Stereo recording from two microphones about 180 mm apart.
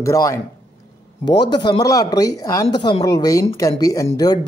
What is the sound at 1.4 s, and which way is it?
Speech, 25° left (ahead or behind).